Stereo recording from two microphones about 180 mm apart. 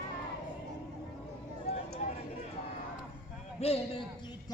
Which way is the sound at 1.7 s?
35° left (ahead or behind).